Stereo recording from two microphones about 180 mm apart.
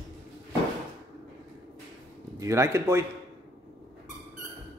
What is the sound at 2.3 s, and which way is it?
Speech, 15° right (ahead or behind).